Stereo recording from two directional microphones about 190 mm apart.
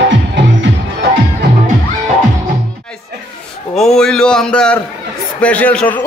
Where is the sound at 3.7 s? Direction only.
5° left (ahead or behind).